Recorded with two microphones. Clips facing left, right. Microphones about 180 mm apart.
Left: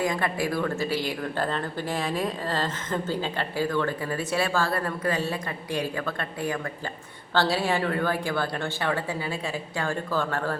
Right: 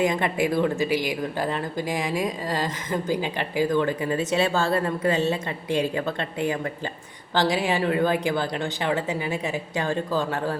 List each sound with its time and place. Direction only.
0.0 s a woman's voice: 20° right (ahead or behind)